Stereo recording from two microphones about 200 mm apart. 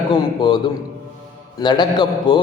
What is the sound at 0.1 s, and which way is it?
A man's voice, 25° left (ahead or behind).